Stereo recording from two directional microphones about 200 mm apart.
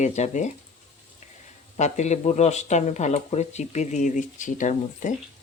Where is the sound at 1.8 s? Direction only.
35° left (ahead or behind).